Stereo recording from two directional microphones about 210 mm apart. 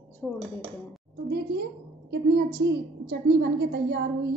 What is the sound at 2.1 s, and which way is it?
A woman's voice, 55° right (ahead or behind).